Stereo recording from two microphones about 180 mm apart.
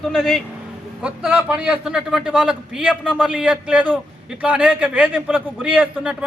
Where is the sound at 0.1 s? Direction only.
Centre (ahead or behind).